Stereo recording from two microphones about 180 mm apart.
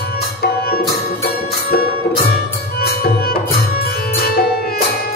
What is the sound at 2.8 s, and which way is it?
Music, 60° left (ahead or behind).